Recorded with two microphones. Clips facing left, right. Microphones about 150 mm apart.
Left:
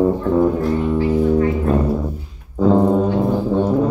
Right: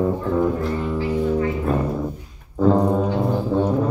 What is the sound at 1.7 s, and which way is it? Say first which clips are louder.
Brass instrument: left 4 dB; 5° left (ahead or behind).